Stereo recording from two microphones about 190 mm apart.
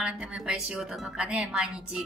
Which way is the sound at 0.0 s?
5° right (ahead or behind).